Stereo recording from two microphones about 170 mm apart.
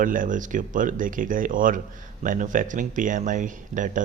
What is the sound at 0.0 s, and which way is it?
Speech, 50° right (ahead or behind).